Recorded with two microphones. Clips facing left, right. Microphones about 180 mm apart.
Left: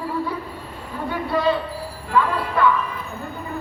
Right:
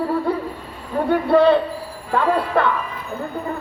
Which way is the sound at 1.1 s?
60° right (ahead or behind).